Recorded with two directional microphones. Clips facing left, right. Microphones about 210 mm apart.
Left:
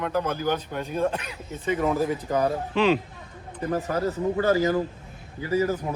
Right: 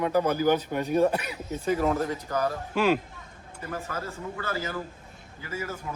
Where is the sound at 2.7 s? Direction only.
10° right (ahead or behind).